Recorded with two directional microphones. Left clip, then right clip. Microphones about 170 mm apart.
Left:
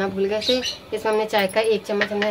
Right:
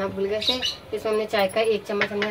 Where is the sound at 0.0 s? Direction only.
50° left (ahead or behind).